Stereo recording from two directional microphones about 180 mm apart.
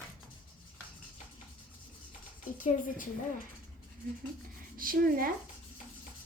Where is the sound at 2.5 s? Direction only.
50° left (ahead or behind).